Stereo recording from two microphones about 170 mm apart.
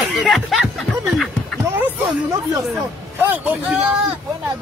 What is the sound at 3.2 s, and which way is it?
Speech, 10° right (ahead or behind).